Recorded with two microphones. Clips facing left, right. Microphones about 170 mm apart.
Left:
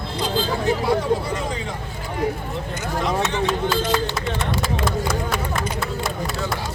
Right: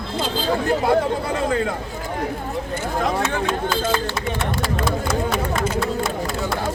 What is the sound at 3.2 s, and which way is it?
Speech, 5° left (ahead or behind).